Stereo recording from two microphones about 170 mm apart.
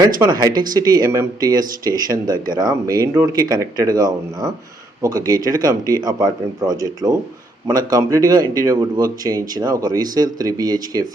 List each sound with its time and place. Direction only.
0.2 s speech: 25° right (ahead or behind)